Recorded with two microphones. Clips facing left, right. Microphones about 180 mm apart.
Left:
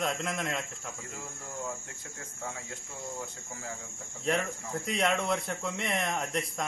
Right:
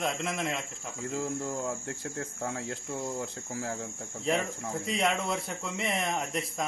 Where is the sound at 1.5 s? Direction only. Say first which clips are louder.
Right 5 dB; 65° right (ahead or behind).